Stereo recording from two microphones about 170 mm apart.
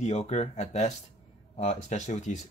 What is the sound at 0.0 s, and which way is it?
Speech, 40° left (ahead or behind).